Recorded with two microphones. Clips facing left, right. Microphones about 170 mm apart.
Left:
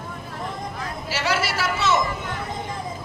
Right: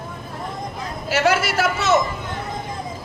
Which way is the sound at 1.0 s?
50° right (ahead or behind).